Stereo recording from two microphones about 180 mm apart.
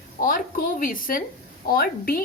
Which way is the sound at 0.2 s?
50° left (ahead or behind).